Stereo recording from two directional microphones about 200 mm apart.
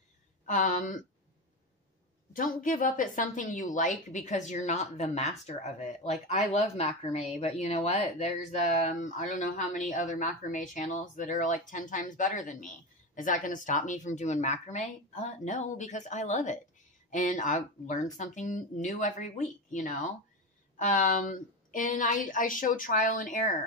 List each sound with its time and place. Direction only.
0.5 s speech: 40° left (ahead or behind)
2.3 s speech: 40° left (ahead or behind)